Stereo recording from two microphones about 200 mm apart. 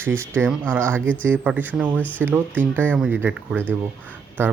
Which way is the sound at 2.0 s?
10° left (ahead or behind).